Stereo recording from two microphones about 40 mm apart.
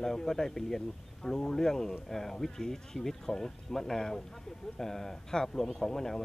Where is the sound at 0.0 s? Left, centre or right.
Centre.